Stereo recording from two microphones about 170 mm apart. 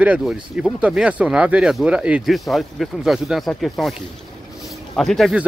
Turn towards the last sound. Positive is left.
turn(degrees=0)  # may be behind; listen again after turning